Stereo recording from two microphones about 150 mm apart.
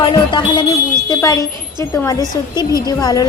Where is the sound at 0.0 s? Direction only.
30° left (ahead or behind).